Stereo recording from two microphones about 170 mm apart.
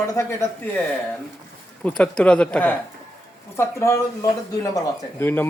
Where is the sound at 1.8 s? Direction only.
5° left (ahead or behind).